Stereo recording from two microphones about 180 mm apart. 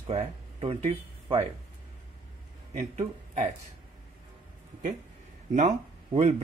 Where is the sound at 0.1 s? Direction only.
30° right (ahead or behind).